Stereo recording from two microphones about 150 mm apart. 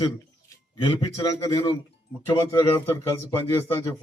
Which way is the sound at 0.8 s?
25° left (ahead or behind).